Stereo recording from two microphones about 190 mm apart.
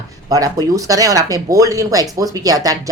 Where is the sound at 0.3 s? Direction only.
20° right (ahead or behind).